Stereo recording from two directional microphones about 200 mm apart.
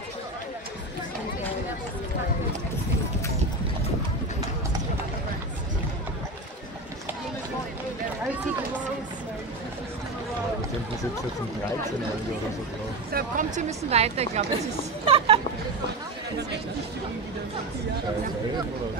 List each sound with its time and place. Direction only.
13.1 s a woman's voice: 40° right (ahead or behind)
15.0 s music: 30° right (ahead or behind)